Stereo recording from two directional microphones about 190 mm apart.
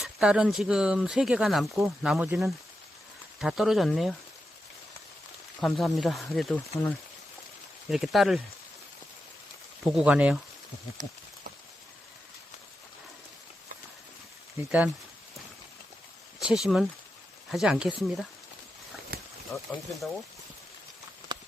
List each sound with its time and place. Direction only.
0.0 s speech: 5° right (ahead or behind)
5.5 s speech: centre (ahead or behind)
9.9 s speech: 5° right (ahead or behind)
16.4 s speech: 5° right (ahead or behind)
19.5 s speech: centre (ahead or behind)
21.3 s clip-clop: 20° right (ahead or behind)